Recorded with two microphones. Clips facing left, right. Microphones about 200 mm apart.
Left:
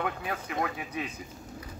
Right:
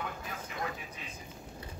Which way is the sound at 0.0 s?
70° left (ahead or behind).